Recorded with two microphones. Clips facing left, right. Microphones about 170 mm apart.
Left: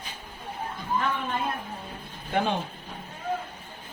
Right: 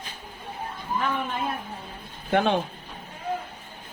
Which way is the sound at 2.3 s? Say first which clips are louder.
Right 4 dB; 75° right (ahead or behind).